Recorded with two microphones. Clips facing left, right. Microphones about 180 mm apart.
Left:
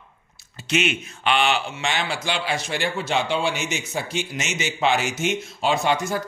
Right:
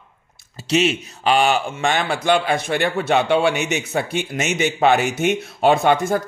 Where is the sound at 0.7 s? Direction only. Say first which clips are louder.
Right 5 dB; 35° right (ahead or behind).